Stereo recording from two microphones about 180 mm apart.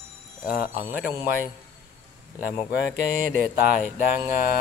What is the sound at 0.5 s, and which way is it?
Speech, 55° left (ahead or behind).